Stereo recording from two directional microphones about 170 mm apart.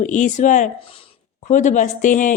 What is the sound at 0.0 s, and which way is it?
Speech, 45° left (ahead or behind).